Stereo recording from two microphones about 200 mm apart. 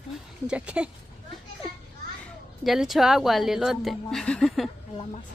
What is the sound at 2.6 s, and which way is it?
A woman's voice, centre (ahead or behind).